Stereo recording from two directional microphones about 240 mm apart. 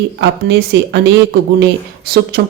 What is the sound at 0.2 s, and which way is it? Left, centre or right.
Speech, right.